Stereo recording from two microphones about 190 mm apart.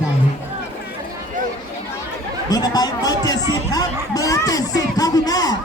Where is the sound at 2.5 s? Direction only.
20° left (ahead or behind).